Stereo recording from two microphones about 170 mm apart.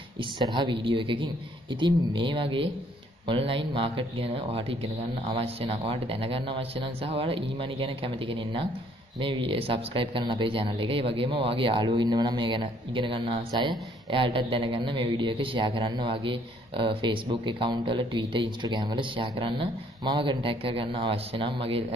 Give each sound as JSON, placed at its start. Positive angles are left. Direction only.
{"t": 0.2, "sound": "a man's voice", "side_deg": -25}